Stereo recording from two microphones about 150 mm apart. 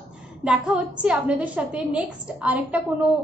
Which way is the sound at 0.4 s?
5° right (ahead or behind).